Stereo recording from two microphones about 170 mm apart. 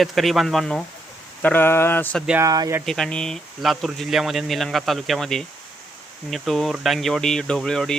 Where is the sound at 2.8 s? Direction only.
5° left (ahead or behind).